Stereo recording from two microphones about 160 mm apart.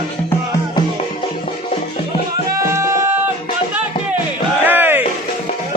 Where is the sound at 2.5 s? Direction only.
20° right (ahead or behind).